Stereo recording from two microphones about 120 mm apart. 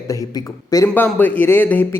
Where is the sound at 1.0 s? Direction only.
15° left (ahead or behind).